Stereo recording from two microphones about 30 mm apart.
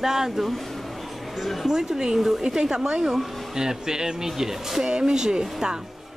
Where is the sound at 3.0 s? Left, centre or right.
Centre.